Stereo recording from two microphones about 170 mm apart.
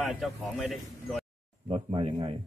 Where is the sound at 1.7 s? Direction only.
30° right (ahead or behind).